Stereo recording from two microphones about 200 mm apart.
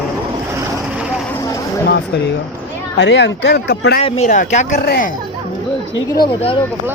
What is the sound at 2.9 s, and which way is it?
Speech, 60° left (ahead or behind).